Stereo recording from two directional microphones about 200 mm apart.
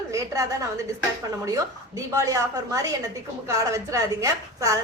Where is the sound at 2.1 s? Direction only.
15° right (ahead or behind).